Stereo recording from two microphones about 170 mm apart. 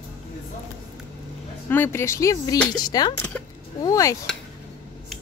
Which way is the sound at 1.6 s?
10° left (ahead or behind).